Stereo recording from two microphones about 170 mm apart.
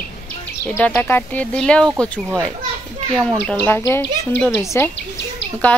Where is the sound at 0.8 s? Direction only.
10° left (ahead or behind).